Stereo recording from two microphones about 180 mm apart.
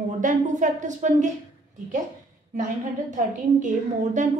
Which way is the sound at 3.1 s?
45° right (ahead or behind).